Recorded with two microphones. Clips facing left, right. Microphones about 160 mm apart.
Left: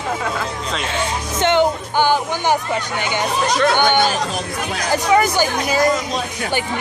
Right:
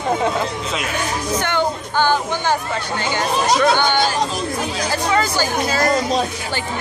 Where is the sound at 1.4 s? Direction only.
20° left (ahead or behind).